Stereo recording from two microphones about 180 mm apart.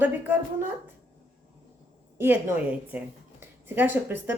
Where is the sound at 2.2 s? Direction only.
10° right (ahead or behind).